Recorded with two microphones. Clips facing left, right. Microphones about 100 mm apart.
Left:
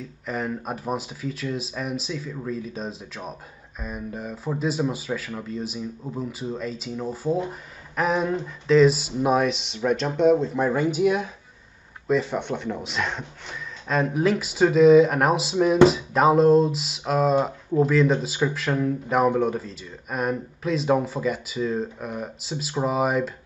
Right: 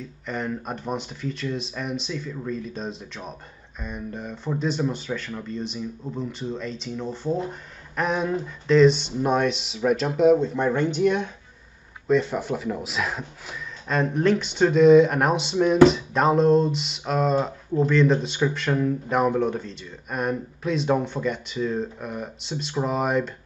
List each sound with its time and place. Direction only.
0.3 s a man's voice: 5° left (ahead or behind)